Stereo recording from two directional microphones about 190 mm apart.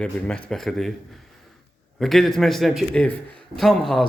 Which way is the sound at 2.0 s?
Centre (ahead or behind).